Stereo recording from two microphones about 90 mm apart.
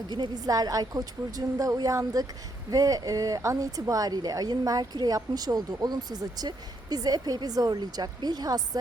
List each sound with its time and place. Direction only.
0.1 s speech: 50° right (ahead or behind)